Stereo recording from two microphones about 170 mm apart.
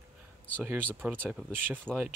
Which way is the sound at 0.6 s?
10° right (ahead or behind).